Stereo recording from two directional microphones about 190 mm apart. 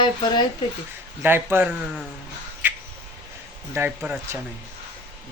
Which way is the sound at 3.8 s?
5° right (ahead or behind).